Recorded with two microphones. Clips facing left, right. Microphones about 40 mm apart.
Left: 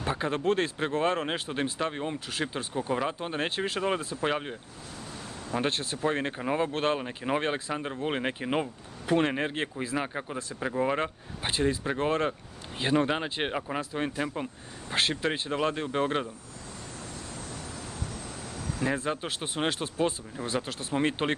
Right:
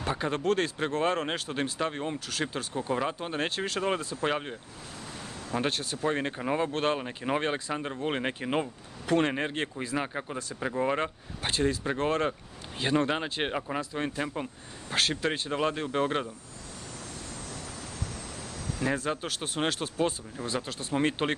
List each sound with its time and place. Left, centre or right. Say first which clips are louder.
0.0 s speech: left 1 dB; centre
2.1 s speech: even; centre
3.8 s speech: right 1 dB; centre
5.7 s speech: left 1 dB; left
6.0 s speech: even; centre
15.2 s speech: even; centre
15.5 s speech: even; centre
18.8 s speech: even; centre
19.2 s speech: even; left
19.5 s speech: even; centre